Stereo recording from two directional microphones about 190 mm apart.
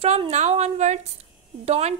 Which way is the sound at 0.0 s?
35° right (ahead or behind).